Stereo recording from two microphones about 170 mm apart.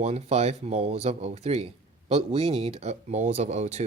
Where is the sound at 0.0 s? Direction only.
40° right (ahead or behind).